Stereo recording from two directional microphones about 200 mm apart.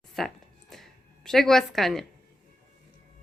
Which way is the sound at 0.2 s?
Centre (ahead or behind).